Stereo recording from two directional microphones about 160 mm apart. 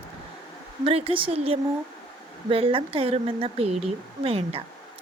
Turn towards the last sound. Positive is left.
turn(degrees=-40)  # may be behind; listen again after turning